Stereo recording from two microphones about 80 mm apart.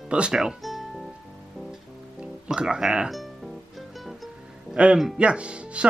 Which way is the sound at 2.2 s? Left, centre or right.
Centre.